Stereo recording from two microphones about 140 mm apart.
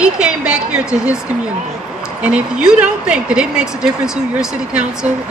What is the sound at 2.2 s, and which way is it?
Speech, 5° right (ahead or behind).